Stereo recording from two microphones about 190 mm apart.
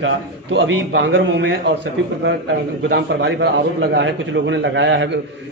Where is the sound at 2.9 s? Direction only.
65° right (ahead or behind).